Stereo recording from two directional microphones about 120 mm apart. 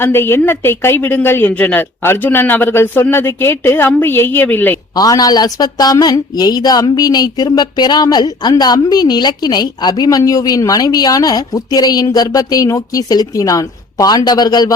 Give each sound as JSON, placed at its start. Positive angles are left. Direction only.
{"t": 0.0, "sound": "a woman's voice", "side_deg": 20}
{"t": 4.9, "sound": "speech", "side_deg": 30}